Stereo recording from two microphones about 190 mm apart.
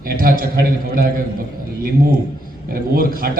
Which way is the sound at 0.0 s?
50° right (ahead or behind).